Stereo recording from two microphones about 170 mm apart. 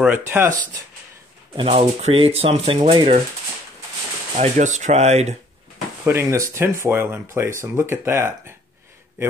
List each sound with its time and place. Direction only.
0.3 s speech: 15° right (ahead or behind)
1.6 s speech: 35° right (ahead or behind)
4.4 s speech: 45° right (ahead or behind)
6.0 s speech: 15° right (ahead or behind)